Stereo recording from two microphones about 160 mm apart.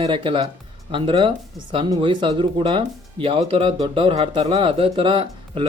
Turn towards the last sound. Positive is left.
turn(degrees=-30)  # may be behind; listen again after turning